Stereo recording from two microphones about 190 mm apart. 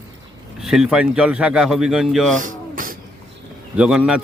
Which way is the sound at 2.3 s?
45° right (ahead or behind).